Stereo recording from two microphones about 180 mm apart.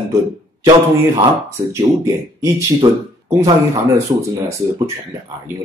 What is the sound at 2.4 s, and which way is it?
Speech, 15° right (ahead or behind).